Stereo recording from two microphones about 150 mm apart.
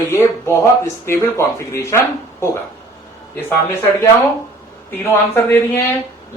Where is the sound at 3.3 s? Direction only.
15° left (ahead or behind).